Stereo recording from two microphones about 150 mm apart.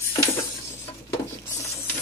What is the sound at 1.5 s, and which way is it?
Patter, 20° left (ahead or behind).